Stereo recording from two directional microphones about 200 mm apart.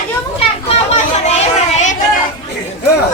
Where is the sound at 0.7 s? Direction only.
30° left (ahead or behind).